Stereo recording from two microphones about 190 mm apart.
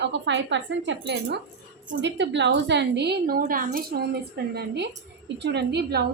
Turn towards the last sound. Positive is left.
turn(degrees=-55)  # may be behind; listen again after turning